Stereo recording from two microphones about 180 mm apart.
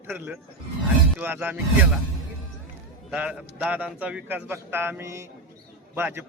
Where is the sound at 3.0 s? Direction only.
5° right (ahead or behind).